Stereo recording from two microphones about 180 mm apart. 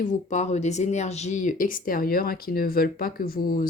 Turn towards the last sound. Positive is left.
turn(degrees=50)  # may be behind; listen again after turning